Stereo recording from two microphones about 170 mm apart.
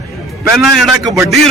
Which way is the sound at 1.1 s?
20° right (ahead or behind).